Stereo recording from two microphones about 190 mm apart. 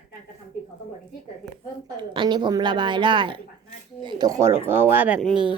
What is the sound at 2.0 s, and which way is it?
A woman's voice, 25° right (ahead or behind).